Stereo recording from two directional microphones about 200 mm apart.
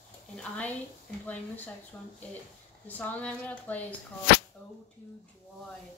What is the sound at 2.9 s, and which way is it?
Speech, 10° left (ahead or behind).